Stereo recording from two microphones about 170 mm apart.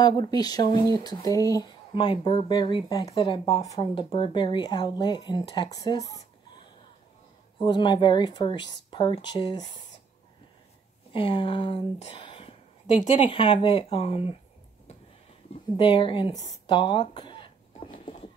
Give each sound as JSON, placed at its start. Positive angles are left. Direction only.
{"t": 0.0, "sound": "speech", "side_deg": 25}
{"t": 7.6, "sound": "speech", "side_deg": 25}
{"t": 11.1, "sound": "speech", "side_deg": 30}
{"t": 15.8, "sound": "speech", "side_deg": 30}
{"t": 17.9, "sound": "a sound", "side_deg": 35}